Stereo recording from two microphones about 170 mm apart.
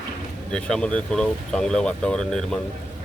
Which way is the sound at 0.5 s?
5° left (ahead or behind).